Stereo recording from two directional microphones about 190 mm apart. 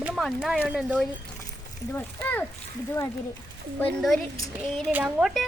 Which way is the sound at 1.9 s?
10° left (ahead or behind).